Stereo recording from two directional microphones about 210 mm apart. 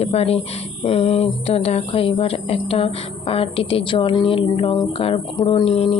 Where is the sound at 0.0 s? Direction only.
30° left (ahead or behind).